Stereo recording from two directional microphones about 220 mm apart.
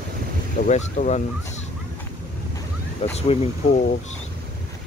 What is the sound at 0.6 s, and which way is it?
Speech, 35° left (ahead or behind).